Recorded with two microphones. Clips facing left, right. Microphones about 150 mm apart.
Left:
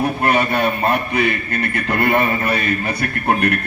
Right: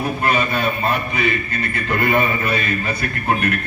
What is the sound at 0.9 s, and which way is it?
A man's voice, 60° left (ahead or behind).